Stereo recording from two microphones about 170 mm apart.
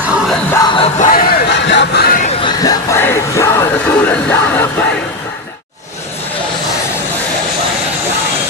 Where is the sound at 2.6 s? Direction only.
20° left (ahead or behind).